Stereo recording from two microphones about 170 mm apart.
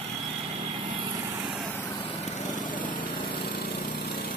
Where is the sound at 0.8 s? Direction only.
30° right (ahead or behind).